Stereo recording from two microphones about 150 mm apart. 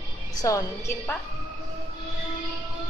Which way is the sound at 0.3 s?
25° left (ahead or behind).